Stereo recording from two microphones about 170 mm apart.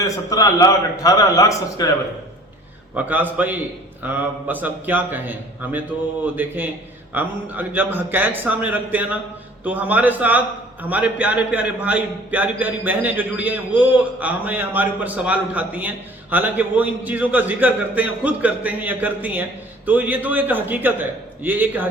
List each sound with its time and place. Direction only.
0.3 s a man's voice: 20° left (ahead or behind)
2.9 s a man's voice: 10° right (ahead or behind)